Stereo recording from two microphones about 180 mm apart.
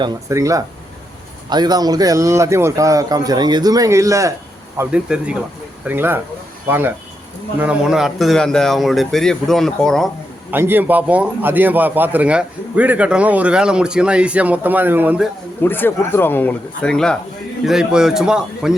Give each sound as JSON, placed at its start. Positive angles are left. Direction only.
{"t": 0.0, "sound": "a man's voice", "side_deg": -15}
{"t": 4.8, "sound": "a man's voice", "side_deg": -5}
{"t": 10.5, "sound": "a man's voice", "side_deg": -10}
{"t": 15.6, "sound": "speech", "side_deg": 10}